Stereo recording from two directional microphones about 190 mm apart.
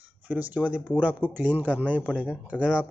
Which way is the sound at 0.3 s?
10° right (ahead or behind).